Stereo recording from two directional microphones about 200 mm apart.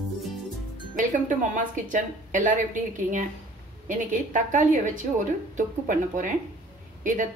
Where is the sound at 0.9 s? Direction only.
40° right (ahead or behind).